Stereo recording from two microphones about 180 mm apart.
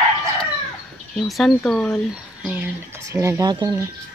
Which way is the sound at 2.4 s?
10° right (ahead or behind).